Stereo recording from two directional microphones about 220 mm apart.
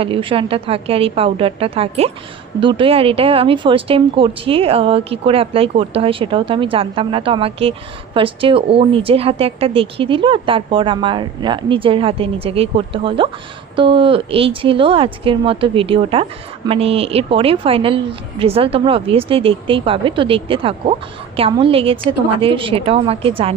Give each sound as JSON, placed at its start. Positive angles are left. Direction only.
{"t": 0.0, "sound": "a woman's voice", "side_deg": -25}